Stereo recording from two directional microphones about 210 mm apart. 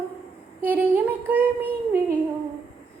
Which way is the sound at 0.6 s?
10° right (ahead or behind).